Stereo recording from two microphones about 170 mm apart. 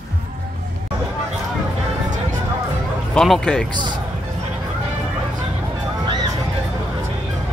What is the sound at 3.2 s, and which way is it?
Speech, 5° left (ahead or behind).